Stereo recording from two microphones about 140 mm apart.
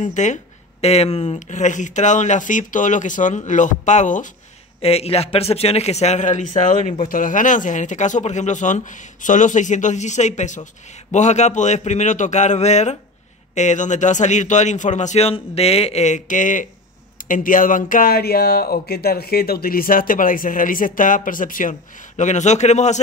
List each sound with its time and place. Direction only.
0.0 s speech: 60° left (ahead or behind)
4.8 s speech: 45° left (ahead or behind); by 21.7 s 75° left (ahead or behind)
22.1 s speech: 55° left (ahead or behind)